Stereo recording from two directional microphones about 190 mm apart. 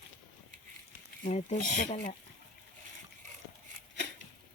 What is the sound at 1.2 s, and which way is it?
Speech, 40° left (ahead or behind).